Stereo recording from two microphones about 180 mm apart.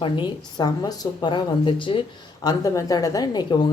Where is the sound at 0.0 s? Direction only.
25° left (ahead or behind).